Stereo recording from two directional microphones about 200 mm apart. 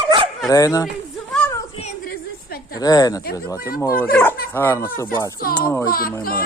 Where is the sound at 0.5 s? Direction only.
15° left (ahead or behind).